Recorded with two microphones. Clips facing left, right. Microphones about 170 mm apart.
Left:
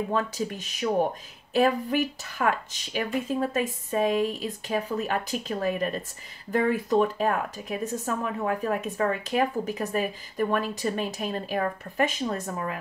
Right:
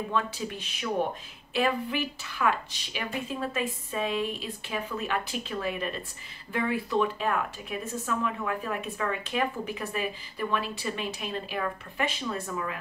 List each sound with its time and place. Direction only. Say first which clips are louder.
0.1 s speech: left 3 dB; 45° left (ahead or behind)